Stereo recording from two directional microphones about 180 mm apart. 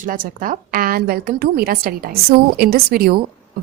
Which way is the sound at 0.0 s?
50° right (ahead or behind).